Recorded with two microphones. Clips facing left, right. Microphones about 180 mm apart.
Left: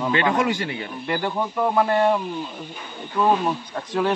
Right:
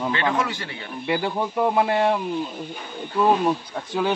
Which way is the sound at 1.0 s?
10° right (ahead or behind).